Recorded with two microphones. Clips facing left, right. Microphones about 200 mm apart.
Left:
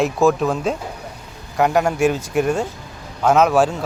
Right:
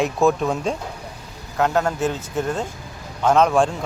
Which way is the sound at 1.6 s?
10° left (ahead or behind).